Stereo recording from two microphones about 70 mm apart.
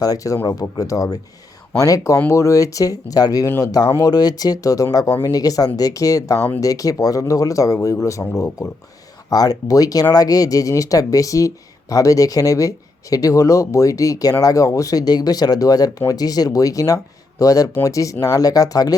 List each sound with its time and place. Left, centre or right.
0.0 s speech: left
9.3 s speech: left